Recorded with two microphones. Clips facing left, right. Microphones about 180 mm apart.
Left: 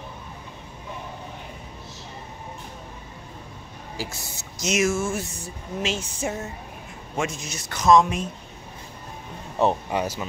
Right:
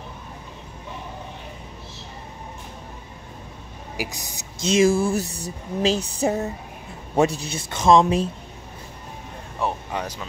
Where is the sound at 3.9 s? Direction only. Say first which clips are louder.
Right 3 dB; 15° right (ahead or behind).